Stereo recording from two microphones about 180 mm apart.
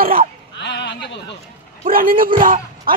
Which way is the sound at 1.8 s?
50° right (ahead or behind).